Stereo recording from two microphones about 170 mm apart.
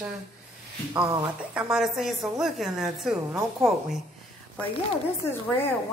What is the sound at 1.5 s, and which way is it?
A woman's voice, 5° right (ahead or behind).